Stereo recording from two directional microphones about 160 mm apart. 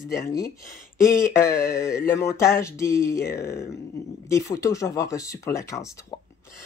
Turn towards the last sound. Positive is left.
turn(degrees=20)  # may be behind; listen again after turning